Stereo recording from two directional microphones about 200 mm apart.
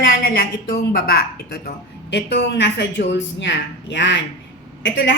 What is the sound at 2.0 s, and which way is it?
A woman's voice, 60° left (ahead or behind).